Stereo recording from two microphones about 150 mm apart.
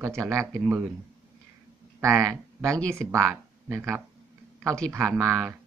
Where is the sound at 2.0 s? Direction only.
20° right (ahead or behind).